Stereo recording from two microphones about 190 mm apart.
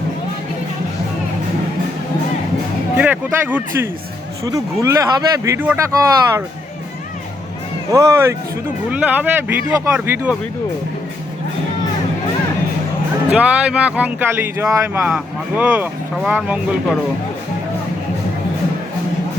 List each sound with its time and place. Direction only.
3.0 s speech: 10° right (ahead or behind)
7.9 s speech: 15° right (ahead or behind)
13.3 s speech: 5° right (ahead or behind)